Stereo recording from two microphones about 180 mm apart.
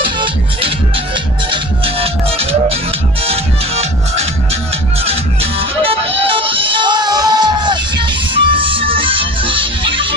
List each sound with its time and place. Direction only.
0.2 s music: 30° right (ahead or behind)
3.3 s music: 35° right (ahead or behind)